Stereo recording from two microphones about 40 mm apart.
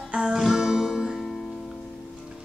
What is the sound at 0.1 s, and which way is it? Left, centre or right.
Music, right.